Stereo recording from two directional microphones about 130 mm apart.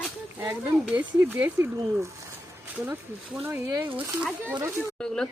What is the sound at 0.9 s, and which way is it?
Speech, 15° right (ahead or behind).